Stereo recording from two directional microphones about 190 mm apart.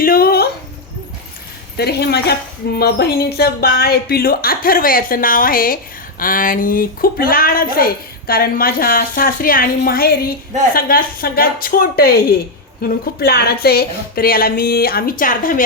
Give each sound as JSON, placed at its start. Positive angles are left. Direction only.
{"t": 0.0, "sound": "dog", "side_deg": 50}
{"t": 1.7, "sound": "a woman's voice", "side_deg": 60}